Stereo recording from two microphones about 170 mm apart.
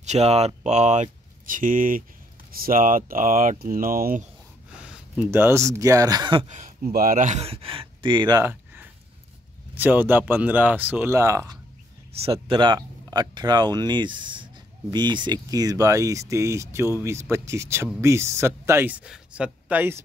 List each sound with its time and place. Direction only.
0.0 s speech: 40° right (ahead or behind); by 4.3 s 55° right (ahead or behind)
4.7 s speech: 5° right (ahead or behind); by 6.4 s 25° right (ahead or behind)
6.5 s speech: 50° right (ahead or behind); by 8.5 s 25° right (ahead or behind)
9.8 s speech: 10° right (ahead or behind)
12.1 s speech: 35° right (ahead or behind); by 20.0 s 10° right (ahead or behind)